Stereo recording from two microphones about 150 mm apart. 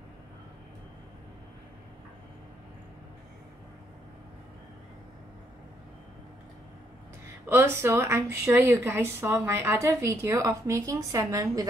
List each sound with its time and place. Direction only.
7.4 s speech: 15° right (ahead or behind)